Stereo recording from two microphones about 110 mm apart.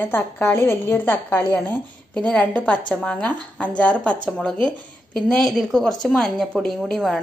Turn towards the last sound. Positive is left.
turn(degrees=0)  # may be behind; listen again after turning